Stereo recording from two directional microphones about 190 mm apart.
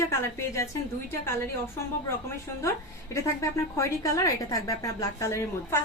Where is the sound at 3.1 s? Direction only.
15° left (ahead or behind).